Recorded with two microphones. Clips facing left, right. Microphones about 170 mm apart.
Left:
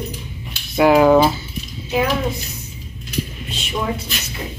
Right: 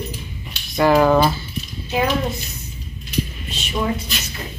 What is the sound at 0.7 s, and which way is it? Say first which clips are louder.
Speech: left 3 dB; 10° left (ahead or behind).